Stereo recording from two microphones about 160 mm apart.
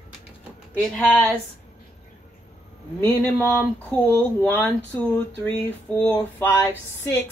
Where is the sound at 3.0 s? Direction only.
15° left (ahead or behind).